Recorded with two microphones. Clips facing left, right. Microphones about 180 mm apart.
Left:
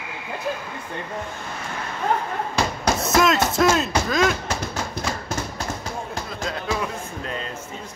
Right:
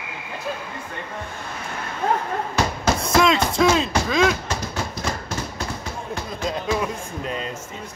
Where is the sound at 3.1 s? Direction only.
Centre (ahead or behind).